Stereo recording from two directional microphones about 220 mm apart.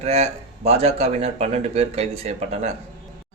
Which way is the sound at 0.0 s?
30° right (ahead or behind).